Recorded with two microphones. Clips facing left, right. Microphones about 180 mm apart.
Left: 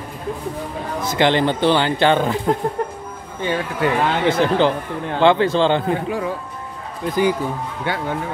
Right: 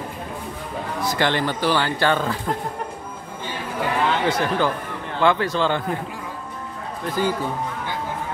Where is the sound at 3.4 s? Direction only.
65° left (ahead or behind).